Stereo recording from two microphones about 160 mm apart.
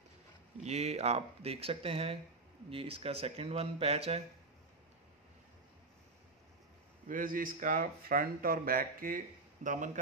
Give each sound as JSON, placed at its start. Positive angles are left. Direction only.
{"t": 0.7, "sound": "speech", "side_deg": -45}
{"t": 7.1, "sound": "speech", "side_deg": -60}